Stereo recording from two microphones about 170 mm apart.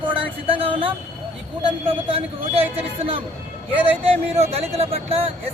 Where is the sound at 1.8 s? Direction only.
30° right (ahead or behind).